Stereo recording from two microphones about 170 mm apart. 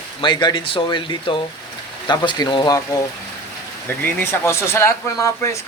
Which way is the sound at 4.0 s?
15° left (ahead or behind).